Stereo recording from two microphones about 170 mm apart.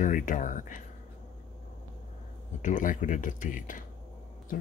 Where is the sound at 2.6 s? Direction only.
50° left (ahead or behind).